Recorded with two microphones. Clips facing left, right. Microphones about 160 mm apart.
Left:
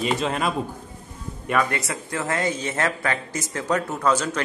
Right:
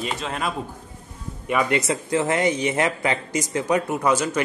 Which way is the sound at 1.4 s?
15° right (ahead or behind).